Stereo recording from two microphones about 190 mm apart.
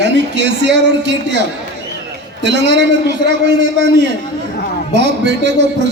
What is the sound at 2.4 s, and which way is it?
A man's voice, 65° right (ahead or behind).